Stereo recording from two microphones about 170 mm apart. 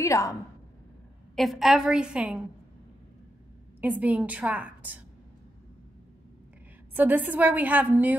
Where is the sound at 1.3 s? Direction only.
Centre (ahead or behind).